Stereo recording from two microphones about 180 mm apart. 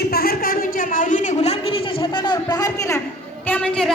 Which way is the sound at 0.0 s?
60° left (ahead or behind).